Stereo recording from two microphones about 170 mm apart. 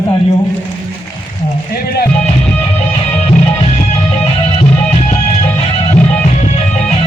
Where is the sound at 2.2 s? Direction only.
40° left (ahead or behind).